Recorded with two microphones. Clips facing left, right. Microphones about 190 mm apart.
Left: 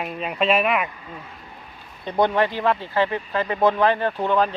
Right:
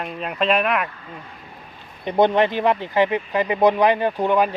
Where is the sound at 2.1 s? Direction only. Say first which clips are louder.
Right 3 dB; 20° right (ahead or behind).